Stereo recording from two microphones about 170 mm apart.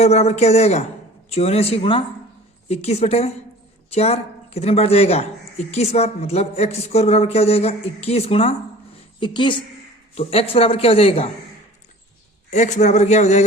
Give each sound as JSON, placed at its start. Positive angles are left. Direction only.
{"t": 0.0, "sound": "a woman's voice", "side_deg": 40}
{"t": 12.5, "sound": "a man's voice", "side_deg": 45}